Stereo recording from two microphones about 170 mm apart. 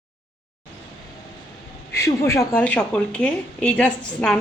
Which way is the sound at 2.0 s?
15° left (ahead or behind).